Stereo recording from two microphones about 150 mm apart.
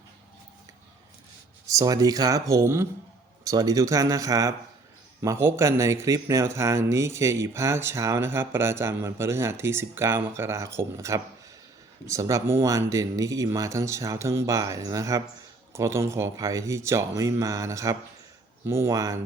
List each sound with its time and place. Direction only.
1.6 s speech: 25° right (ahead or behind)